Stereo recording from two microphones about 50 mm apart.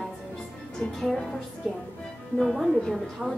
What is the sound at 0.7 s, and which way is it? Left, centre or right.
Speech, centre.